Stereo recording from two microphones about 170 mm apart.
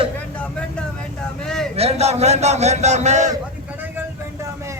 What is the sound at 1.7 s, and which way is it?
A man's voice, 40° right (ahead or behind).